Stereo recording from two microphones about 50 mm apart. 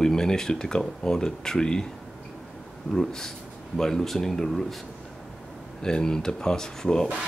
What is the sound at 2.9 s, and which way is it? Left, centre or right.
Speech, centre.